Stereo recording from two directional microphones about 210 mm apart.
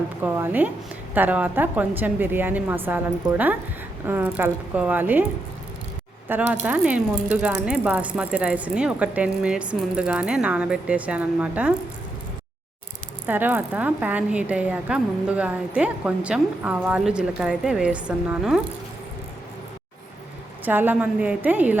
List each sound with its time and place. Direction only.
0.2 s a woman's voice: 10° right (ahead or behind)
6.2 s speech: 10° right (ahead or behind)
13.2 s speech: 10° right (ahead or behind)
20.7 s a woman's voice: 10° right (ahead or behind)